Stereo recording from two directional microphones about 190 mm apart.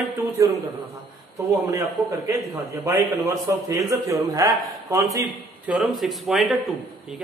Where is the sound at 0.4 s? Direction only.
15° right (ahead or behind).